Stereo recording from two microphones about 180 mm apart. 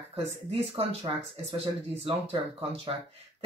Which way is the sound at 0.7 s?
30° right (ahead or behind).